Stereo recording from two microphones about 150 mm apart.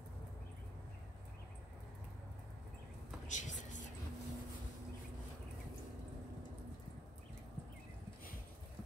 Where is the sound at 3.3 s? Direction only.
55° left (ahead or behind).